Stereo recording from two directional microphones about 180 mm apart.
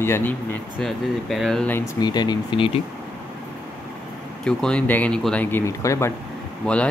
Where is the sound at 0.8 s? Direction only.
Centre (ahead or behind).